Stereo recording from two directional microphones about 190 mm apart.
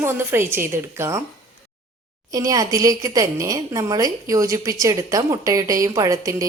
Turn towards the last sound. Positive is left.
turn(degrees=-15)  # may be behind; listen again after turning